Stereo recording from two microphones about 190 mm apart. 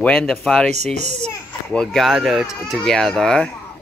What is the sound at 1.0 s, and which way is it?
Speech, 35° right (ahead or behind).